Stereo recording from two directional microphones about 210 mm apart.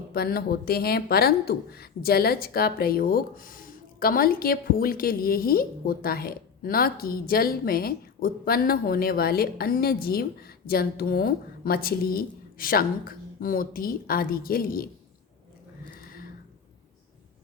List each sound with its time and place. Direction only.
0.1 s speech: 45° left (ahead or behind)